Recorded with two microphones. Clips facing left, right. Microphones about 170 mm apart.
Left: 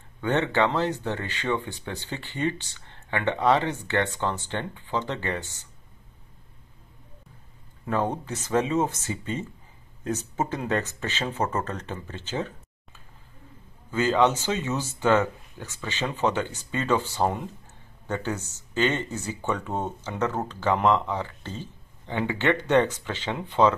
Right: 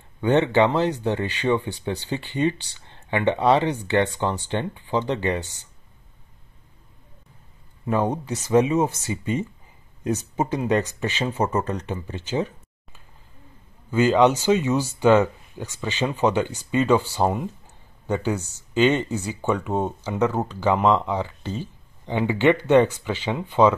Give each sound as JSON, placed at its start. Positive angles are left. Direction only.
{"t": 0.2, "sound": "speech", "side_deg": -15}
{"t": 7.8, "sound": "speech", "side_deg": -10}
{"t": 13.9, "sound": "speech", "side_deg": -15}